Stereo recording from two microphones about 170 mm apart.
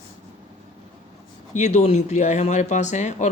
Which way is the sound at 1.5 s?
45° left (ahead or behind).